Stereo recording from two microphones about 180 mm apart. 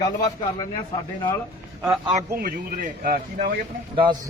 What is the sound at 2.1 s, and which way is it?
Speech, 45° right (ahead or behind).